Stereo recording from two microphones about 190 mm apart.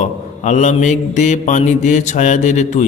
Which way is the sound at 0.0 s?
40° left (ahead or behind).